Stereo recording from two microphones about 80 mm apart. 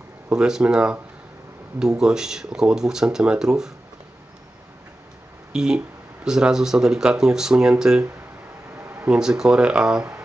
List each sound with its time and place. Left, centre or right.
0.3 s speech: centre
5.5 s speech: centre
8.7 s a sound: right
9.1 s speech: centre